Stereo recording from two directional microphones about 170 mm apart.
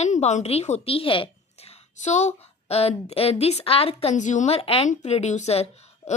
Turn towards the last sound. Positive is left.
turn(degrees=40)  # may be behind; listen again after turning